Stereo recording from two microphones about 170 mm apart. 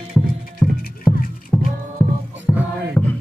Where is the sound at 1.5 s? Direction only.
15° left (ahead or behind).